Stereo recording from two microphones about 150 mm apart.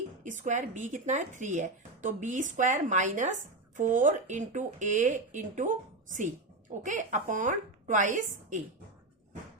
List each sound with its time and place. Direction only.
0.3 s speech: 55° right (ahead or behind)